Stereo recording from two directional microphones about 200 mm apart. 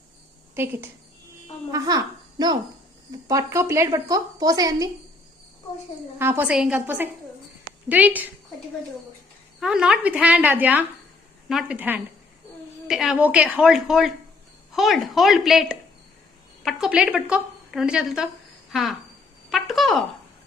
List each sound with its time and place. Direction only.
0.5 s a woman's voice: 10° right (ahead or behind)
6.1 s a woman's voice: 10° right (ahead or behind)
9.6 s a woman's voice: 5° right (ahead or behind)